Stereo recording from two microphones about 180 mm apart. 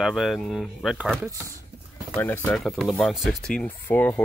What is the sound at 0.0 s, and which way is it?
Speech, centre (ahead or behind).